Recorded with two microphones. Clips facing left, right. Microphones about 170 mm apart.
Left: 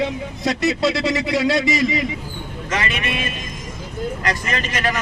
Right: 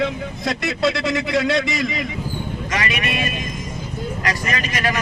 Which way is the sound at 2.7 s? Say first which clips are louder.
Left 1 dB; 15° right (ahead or behind).